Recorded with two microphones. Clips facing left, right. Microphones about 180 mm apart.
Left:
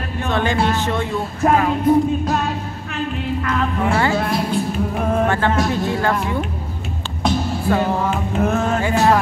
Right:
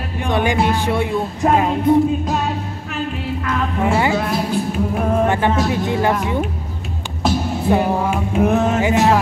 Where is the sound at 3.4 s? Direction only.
10° right (ahead or behind).